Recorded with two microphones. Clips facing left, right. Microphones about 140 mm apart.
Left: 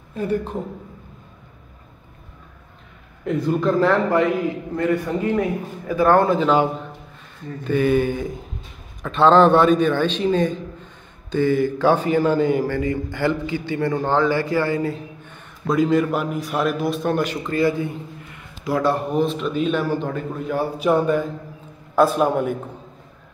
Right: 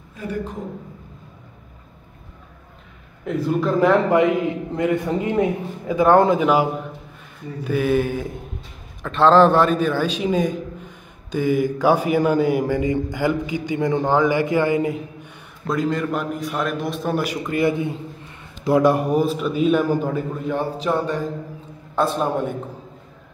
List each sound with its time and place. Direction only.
0.2 s speech: 30° left (ahead or behind)
3.3 s a man's voice: 5° right (ahead or behind)
3.8 s a man's voice: 20° right (ahead or behind)
15.7 s a man's voice: centre (ahead or behind)
20.5 s a man's voice: 10° left (ahead or behind)